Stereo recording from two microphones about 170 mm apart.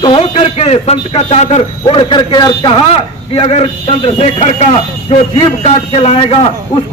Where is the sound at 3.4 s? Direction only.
40° left (ahead or behind).